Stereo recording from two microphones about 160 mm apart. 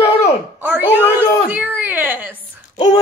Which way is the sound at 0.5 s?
10° right (ahead or behind).